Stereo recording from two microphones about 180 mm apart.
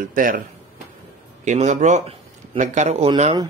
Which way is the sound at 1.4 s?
40° right (ahead or behind).